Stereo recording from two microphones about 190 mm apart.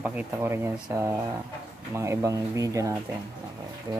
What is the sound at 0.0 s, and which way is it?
Speech, 10° right (ahead or behind).